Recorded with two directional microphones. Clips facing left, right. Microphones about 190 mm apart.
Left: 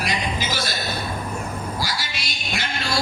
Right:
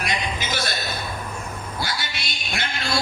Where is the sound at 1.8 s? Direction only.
55° right (ahead or behind).